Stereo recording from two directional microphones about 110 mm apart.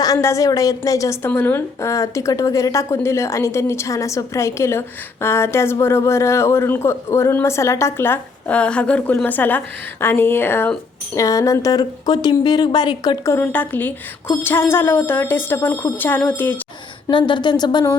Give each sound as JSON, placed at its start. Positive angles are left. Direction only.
{"t": 0.0, "sound": "a woman's voice", "side_deg": 30}
{"t": 11.1, "sound": "speech", "side_deg": 30}
{"t": 13.2, "sound": "a woman's voice", "side_deg": 25}
{"t": 17.1, "sound": "speech", "side_deg": 45}